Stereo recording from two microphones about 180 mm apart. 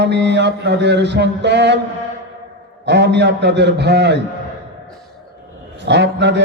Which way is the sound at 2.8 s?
70° right (ahead or behind).